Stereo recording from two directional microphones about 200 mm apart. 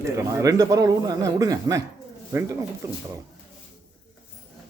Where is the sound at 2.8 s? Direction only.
15° right (ahead or behind).